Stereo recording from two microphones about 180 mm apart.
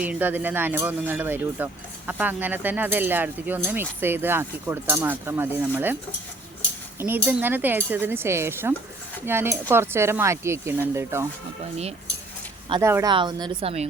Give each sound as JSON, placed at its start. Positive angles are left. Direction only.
{"t": 0.0, "sound": "speech", "side_deg": -10}
{"t": 7.0, "sound": "speech", "side_deg": -10}
{"t": 12.8, "sound": "a woman's voice", "side_deg": -15}